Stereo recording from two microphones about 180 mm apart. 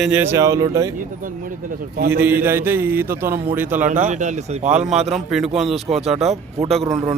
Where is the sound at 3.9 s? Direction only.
40° right (ahead or behind).